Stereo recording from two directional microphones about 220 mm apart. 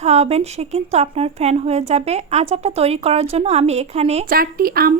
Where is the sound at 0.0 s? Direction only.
30° right (ahead or behind).